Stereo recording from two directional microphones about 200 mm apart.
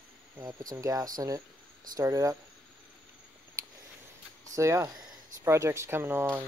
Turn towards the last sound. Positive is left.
turn(degrees=-10)  # may be behind; listen again after turning